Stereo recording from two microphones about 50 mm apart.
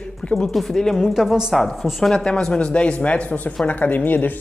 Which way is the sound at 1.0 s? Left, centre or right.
Centre.